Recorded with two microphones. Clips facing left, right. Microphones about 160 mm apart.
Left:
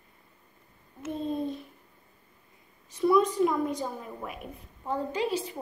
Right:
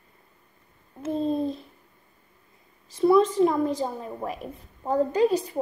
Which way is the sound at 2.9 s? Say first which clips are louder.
Right 4 dB; 30° right (ahead or behind).